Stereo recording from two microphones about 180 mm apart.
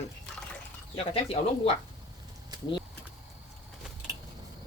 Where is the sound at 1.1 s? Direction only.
35° left (ahead or behind).